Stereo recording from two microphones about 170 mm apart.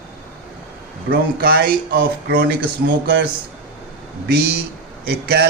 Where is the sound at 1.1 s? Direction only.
65° right (ahead or behind).